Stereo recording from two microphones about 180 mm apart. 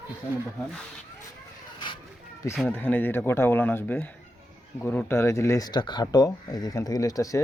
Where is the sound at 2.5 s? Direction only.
5° left (ahead or behind).